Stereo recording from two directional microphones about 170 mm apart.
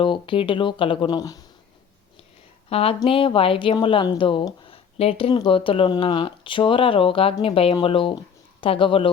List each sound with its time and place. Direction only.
0.0 s speech: 30° left (ahead or behind)
2.6 s speech: 35° left (ahead or behind)